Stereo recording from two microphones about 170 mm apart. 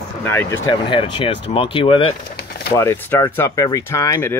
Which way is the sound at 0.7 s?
30° left (ahead or behind).